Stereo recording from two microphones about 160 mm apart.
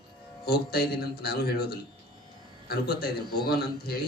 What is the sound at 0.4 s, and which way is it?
Speech, 75° left (ahead or behind).